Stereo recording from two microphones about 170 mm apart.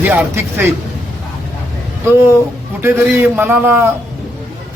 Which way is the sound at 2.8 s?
15° right (ahead or behind).